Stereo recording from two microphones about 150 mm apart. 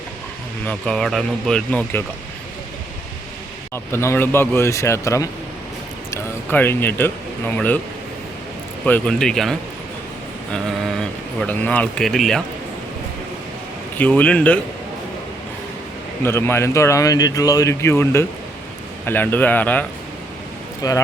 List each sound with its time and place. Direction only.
0.7 s speech: 5° left (ahead or behind)
3.9 s speech: 15° left (ahead or behind)
8.8 s speech: 5° left (ahead or behind)
11.3 s speech: 10° left (ahead or behind)
14.0 s speech: 10° left (ahead or behind)
16.2 s speech: 15° left (ahead or behind)
20.8 s speech: 25° left (ahead or behind)